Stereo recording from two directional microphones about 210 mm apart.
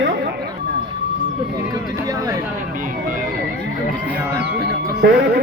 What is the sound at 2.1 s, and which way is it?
Speech, 15° right (ahead or behind).